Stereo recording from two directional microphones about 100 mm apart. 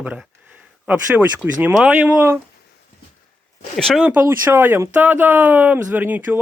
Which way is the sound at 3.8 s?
5° left (ahead or behind).